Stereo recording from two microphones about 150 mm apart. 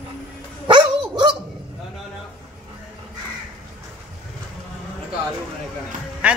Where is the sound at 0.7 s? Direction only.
35° right (ahead or behind).